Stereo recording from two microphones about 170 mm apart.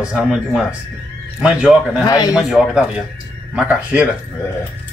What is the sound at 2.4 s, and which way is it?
A man's voice, centre (ahead or behind).